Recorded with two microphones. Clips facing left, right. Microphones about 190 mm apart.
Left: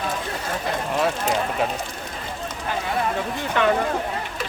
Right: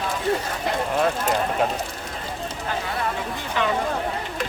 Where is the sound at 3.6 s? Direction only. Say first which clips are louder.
Left 4 dB; 55° left (ahead or behind).